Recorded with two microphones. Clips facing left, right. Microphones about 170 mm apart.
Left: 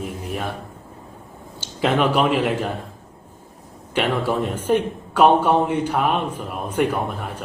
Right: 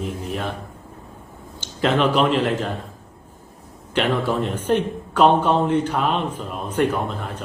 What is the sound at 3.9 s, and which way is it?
Speech, 10° left (ahead or behind).